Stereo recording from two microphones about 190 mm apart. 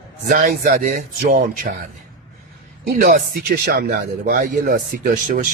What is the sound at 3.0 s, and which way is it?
Speech, 45° right (ahead or behind).